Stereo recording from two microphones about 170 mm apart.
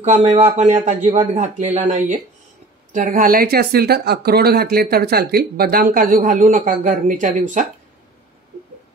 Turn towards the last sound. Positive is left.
turn(degrees=-50)  # may be behind; listen again after turning